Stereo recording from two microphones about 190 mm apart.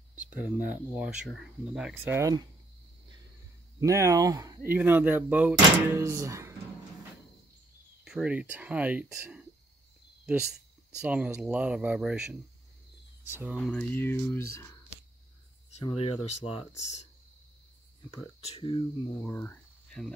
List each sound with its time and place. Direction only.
0.1 s a sound: 10° right (ahead or behind)
0.9 s speech: 5° right (ahead or behind)
3.8 s speech: 15° right (ahead or behind)
8.0 s speech: 5° right (ahead or behind)
11.0 s speech: 5° right (ahead or behind)
13.6 s speech: 5° left (ahead or behind)
15.7 s speech: 30° left (ahead or behind)
18.5 s speech: 25° left (ahead or behind)
19.1 s speech: 10° left (ahead or behind)